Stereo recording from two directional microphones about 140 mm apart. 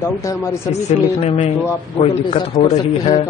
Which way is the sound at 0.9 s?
50° left (ahead or behind).